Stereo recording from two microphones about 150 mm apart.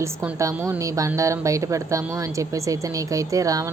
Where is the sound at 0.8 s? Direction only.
20° right (ahead or behind).